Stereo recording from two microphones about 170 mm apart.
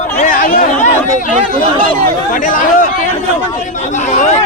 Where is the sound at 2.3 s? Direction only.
55° left (ahead or behind).